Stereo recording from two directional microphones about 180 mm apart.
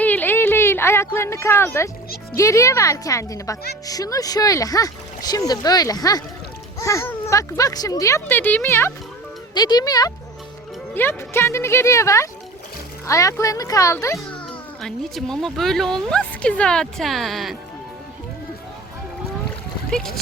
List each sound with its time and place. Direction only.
0.0 s a sound: 10° left (ahead or behind)
2.3 s speech: 15° left (ahead or behind)
10.9 s speech: 10° left (ahead or behind)
14.8 s a woman's voice: centre (ahead or behind)
19.9 s a woman's voice: 5° left (ahead or behind)